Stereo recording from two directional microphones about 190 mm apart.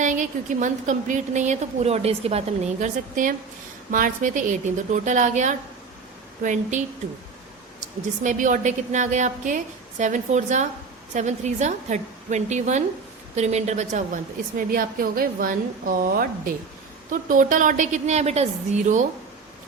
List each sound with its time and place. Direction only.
0.0 s a woman's voice: 40° right (ahead or behind)
8.2 s a woman's voice: 40° right (ahead or behind)
14.7 s a woman's voice: 50° right (ahead or behind)